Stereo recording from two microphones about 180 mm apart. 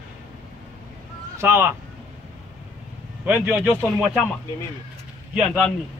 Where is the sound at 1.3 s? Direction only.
15° right (ahead or behind).